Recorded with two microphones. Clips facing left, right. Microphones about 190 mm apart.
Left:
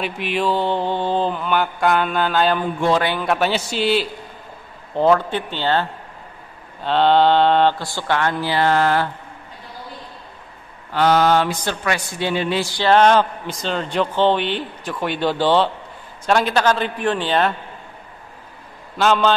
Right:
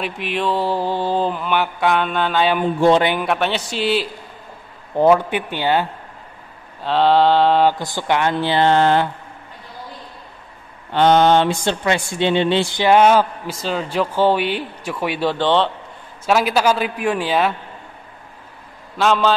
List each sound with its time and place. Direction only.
0.0 s a man's voice: centre (ahead or behind)
2.6 s speech: 25° right (ahead or behind)
3.3 s a man's voice: centre (ahead or behind)
4.9 s a man's voice: 15° right (ahead or behind)
6.8 s a man's voice: centre (ahead or behind)
7.8 s speech: 15° right (ahead or behind)
10.9 s speech: 25° right (ahead or behind)
12.9 s a man's voice: 10° right (ahead or behind)
16.3 s a man's voice: 5° right (ahead or behind)
18.9 s a man's voice: centre (ahead or behind)